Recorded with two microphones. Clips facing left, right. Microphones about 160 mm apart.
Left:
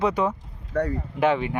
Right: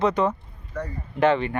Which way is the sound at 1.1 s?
10° left (ahead or behind).